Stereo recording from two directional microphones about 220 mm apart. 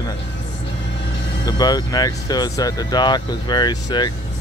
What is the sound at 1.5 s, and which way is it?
Speech, 20° left (ahead or behind).